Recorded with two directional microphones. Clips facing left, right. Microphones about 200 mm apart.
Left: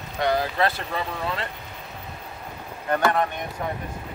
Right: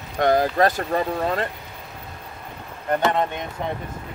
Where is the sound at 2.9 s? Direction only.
20° right (ahead or behind).